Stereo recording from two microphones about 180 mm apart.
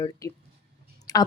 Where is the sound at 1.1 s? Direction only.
20° left (ahead or behind).